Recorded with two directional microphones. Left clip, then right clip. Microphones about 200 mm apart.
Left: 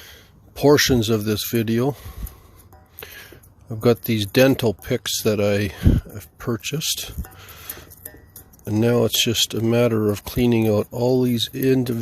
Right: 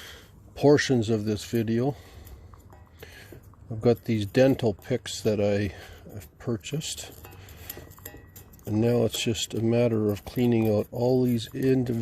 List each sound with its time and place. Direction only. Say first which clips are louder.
0.5 s speech: left 5 dB; 20° left (ahead or behind)
3.0 s speech: left 8 dB; 25° left (ahead or behind)